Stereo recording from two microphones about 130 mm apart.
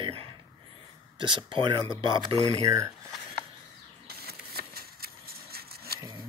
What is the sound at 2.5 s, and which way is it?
Speech, 25° right (ahead or behind).